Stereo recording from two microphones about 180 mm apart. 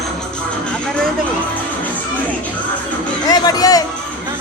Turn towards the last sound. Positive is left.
turn(degrees=20)  # may be behind; listen again after turning